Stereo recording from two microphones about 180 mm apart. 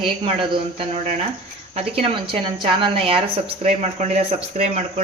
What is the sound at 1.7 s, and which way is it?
A woman's voice, 30° right (ahead or behind).